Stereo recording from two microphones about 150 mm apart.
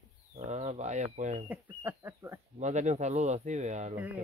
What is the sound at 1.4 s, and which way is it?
Speech, 10° right (ahead or behind).